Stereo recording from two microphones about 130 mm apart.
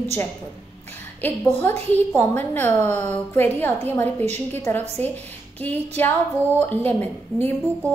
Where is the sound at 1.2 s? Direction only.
15° left (ahead or behind).